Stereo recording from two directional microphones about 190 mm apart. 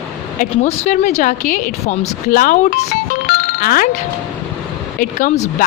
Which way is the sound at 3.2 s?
50° left (ahead or behind).